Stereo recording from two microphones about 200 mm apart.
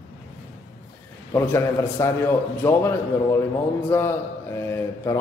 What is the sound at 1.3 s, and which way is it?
A man's voice, 10° left (ahead or behind).